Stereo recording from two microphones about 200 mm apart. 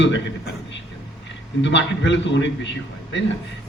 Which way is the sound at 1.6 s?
60° left (ahead or behind).